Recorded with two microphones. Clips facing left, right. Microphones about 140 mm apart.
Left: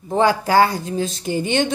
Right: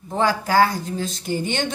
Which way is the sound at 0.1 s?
20° left (ahead or behind).